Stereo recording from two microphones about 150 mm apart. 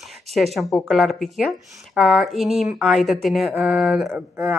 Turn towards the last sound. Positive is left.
turn(degrees=-15)  # may be behind; listen again after turning